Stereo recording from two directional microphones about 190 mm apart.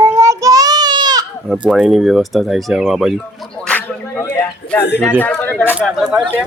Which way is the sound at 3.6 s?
10° left (ahead or behind).